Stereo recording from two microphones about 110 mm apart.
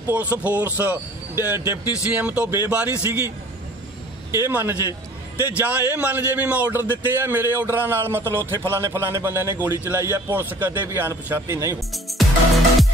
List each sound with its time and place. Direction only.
0.0 s a man's voice: 20° right (ahead or behind)
11.9 s music: centre (ahead or behind)